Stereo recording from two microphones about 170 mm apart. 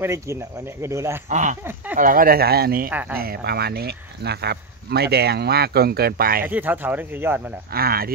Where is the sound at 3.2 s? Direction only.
70° right (ahead or behind).